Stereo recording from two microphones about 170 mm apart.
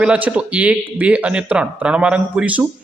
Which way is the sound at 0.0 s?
5° right (ahead or behind).